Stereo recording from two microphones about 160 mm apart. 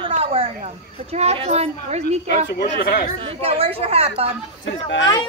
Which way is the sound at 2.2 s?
90° left.